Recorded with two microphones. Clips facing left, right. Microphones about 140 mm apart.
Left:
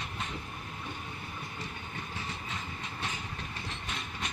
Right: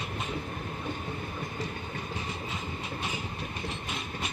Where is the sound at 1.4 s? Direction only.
40° right (ahead or behind).